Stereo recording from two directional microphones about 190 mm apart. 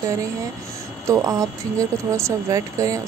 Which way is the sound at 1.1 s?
20° right (ahead or behind).